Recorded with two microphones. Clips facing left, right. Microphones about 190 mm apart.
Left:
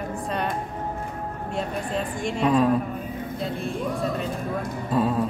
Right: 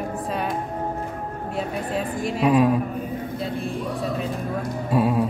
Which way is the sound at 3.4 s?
Centre (ahead or behind).